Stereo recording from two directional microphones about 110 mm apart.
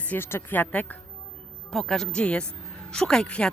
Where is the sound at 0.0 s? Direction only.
20° left (ahead or behind).